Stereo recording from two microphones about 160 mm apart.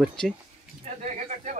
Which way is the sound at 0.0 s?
5° left (ahead or behind).